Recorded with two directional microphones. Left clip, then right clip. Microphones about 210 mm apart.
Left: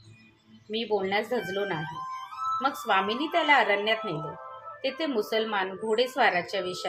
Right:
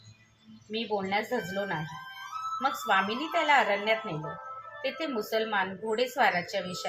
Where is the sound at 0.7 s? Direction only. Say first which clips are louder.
Left 3 dB; 35° left (ahead or behind).